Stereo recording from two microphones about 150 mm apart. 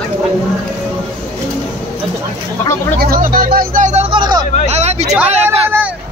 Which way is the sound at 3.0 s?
75° right (ahead or behind).